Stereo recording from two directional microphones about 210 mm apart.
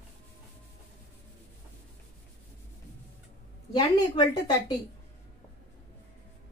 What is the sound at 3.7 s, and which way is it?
A woman's voice, 20° left (ahead or behind).